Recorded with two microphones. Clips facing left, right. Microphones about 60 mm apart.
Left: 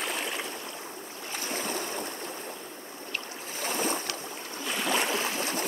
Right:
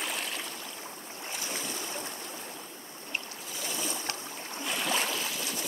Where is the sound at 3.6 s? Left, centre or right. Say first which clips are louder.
Left 7 dB; left.